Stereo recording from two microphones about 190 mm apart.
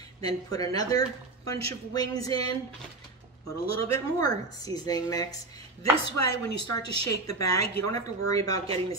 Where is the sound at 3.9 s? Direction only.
20° left (ahead or behind).